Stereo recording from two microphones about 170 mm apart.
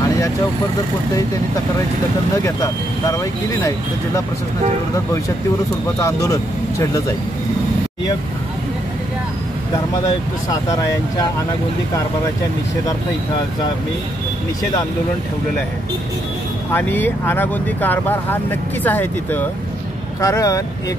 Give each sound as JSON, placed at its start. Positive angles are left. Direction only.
{"t": 2.3, "sound": "speech", "side_deg": 20}
{"t": 5.9, "sound": "speech", "side_deg": 20}
{"t": 10.5, "sound": "speech", "side_deg": 20}
{"t": 16.7, "sound": "speech", "side_deg": 10}